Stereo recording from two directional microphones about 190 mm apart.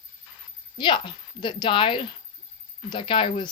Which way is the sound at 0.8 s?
25° left (ahead or behind).